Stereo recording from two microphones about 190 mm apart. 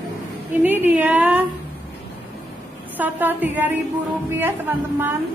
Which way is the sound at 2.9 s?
10° right (ahead or behind).